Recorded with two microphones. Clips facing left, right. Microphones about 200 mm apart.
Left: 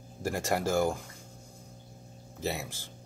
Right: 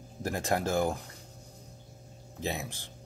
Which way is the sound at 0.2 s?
10° left (ahead or behind).